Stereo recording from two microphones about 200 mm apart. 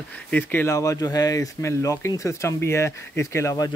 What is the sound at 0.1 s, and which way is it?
Speech, 10° left (ahead or behind).